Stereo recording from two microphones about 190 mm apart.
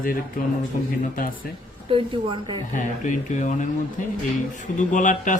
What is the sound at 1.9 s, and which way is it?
Speech, 25° right (ahead or behind).